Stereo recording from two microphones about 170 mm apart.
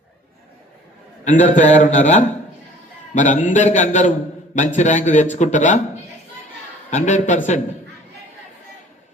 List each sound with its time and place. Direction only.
1.4 s a man's voice: 45° left (ahead or behind)
6.9 s a man's voice: 45° left (ahead or behind)